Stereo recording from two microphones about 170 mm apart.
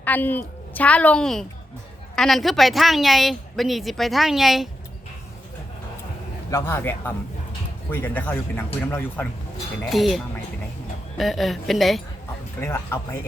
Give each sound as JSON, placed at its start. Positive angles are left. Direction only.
{"t": 0.0, "sound": "a woman's voice", "side_deg": 10}
{"t": 6.5, "sound": "speech", "side_deg": 15}
{"t": 9.8, "sound": "a woman's voice", "side_deg": 0}
{"t": 11.2, "sound": "a woman's voice", "side_deg": 0}
{"t": 12.5, "sound": "speech", "side_deg": 15}